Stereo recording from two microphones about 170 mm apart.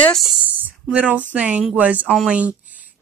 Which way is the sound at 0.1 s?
5° right (ahead or behind).